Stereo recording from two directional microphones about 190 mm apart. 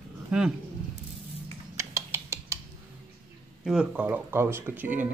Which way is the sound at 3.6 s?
5° right (ahead or behind).